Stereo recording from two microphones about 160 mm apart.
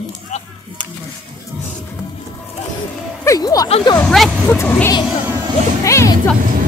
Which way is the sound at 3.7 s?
35° left (ahead or behind).